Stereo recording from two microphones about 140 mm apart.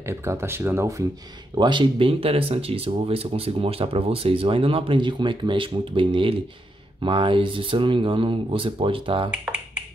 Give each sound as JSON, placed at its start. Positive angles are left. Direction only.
{"t": 0.0, "sound": "speech", "side_deg": -20}
{"t": 1.6, "sound": "speech", "side_deg": -35}